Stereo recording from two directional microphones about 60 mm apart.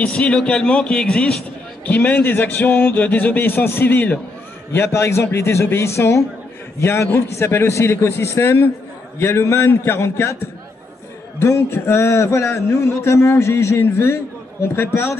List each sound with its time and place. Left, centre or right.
0.0 s speech: centre
1.9 s speech: left
4.7 s a man's voice: left
11.3 s a man's voice: left